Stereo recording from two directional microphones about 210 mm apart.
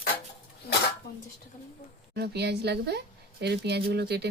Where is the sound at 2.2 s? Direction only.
50° right (ahead or behind).